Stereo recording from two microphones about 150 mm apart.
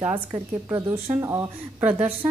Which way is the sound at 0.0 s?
10° right (ahead or behind).